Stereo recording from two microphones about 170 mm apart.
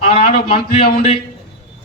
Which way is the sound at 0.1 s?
35° left (ahead or behind).